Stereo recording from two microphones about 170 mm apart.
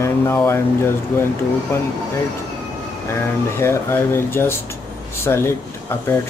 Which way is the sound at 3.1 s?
15° left (ahead or behind).